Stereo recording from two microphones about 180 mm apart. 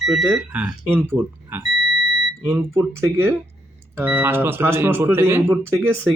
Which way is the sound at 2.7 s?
15° right (ahead or behind).